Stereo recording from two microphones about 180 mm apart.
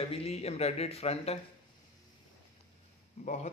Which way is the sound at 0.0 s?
35° left (ahead or behind).